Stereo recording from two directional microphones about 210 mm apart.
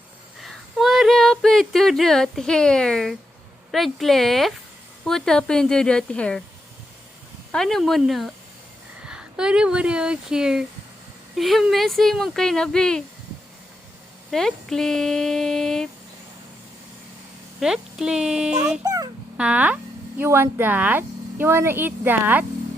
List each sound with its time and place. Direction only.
0.4 s speech: centre (ahead or behind)
7.5 s speech: centre (ahead or behind)
14.3 s speech: centre (ahead or behind)
17.6 s speech: 5° right (ahead or behind)
18.8 s dog: 15° right (ahead or behind)
19.4 s speech: 5° right (ahead or behind)